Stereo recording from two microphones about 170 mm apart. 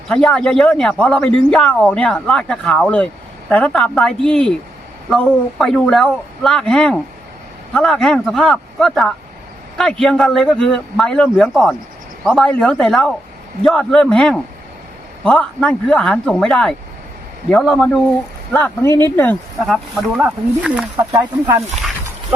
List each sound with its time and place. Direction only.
0.1 s speech: 5° left (ahead or behind)
18.5 s speech: 15° left (ahead or behind)
19.5 s speech: centre (ahead or behind)
20.9 s speech: 20° right (ahead or behind)